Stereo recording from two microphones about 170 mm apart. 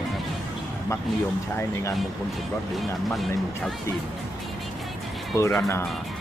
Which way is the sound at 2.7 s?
Centre (ahead or behind).